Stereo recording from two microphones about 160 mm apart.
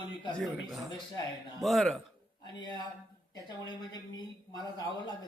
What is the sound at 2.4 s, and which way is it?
A man's voice, 25° left (ahead or behind).